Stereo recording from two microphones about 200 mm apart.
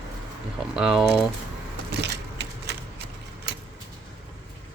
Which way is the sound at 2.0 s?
55° right (ahead or behind).